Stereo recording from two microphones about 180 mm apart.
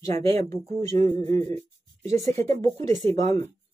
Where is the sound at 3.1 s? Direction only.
40° right (ahead or behind).